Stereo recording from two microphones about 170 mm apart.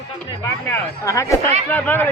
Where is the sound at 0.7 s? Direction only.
20° left (ahead or behind).